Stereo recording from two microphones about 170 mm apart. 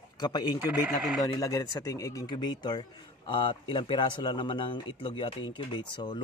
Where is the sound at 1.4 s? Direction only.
20° left (ahead or behind).